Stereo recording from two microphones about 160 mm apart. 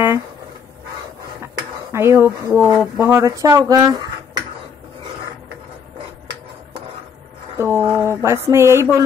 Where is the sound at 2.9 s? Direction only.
15° right (ahead or behind).